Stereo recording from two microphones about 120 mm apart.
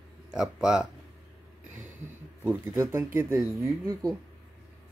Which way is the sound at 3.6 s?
30° right (ahead or behind).